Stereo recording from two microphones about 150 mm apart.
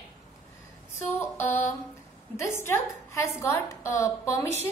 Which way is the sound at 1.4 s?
15° left (ahead or behind).